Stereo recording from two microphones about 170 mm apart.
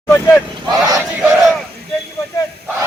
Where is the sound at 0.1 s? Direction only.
10° left (ahead or behind).